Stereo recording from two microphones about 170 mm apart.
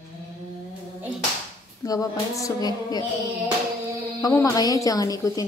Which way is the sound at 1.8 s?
20° left (ahead or behind).